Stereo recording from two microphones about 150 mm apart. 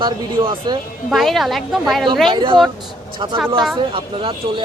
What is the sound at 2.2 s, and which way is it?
Speech, 35° right (ahead or behind).